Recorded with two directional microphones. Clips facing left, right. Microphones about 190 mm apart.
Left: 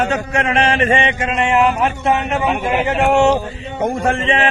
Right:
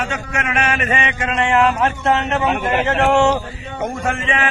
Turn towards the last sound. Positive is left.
turn(degrees=30)  # may be behind; listen again after turning